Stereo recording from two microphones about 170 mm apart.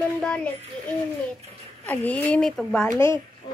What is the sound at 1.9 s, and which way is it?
A woman's voice, 10° left (ahead or behind).